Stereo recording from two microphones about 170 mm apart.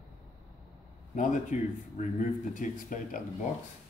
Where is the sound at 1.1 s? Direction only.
50° left (ahead or behind).